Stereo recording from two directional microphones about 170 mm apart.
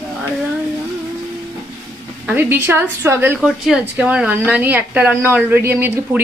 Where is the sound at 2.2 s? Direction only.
10° right (ahead or behind).